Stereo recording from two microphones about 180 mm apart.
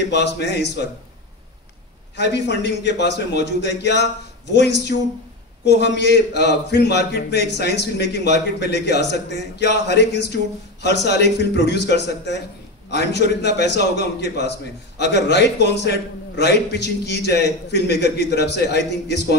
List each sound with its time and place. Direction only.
0.0 s a man's voice: 70° left (ahead or behind)
2.1 s a man's voice: 75° left (ahead or behind)